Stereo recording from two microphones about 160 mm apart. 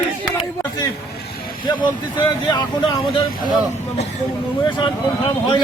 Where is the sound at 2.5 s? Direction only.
30° left (ahead or behind).